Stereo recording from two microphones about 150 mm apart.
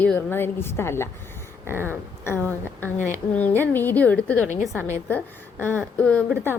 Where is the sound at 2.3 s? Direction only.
10° left (ahead or behind).